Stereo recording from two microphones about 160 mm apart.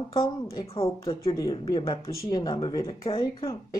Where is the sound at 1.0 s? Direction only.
20° left (ahead or behind).